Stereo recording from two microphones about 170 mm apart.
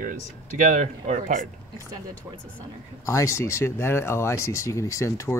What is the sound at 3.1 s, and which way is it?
Speech, 15° left (ahead or behind).